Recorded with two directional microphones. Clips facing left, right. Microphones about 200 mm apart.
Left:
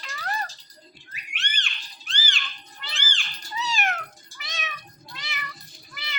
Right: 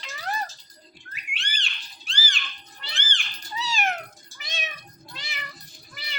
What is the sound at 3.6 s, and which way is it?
Cat, 30° right (ahead or behind).